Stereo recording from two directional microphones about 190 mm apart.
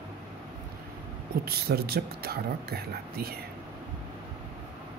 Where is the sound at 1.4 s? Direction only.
55° right (ahead or behind).